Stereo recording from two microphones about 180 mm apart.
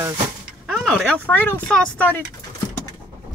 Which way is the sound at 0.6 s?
Centre (ahead or behind).